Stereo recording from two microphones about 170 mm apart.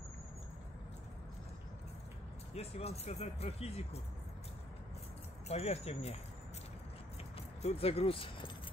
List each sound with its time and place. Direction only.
2.5 s speech: 35° left (ahead or behind)
5.5 s speech: 40° left (ahead or behind)
7.3 s speech: 35° left (ahead or behind)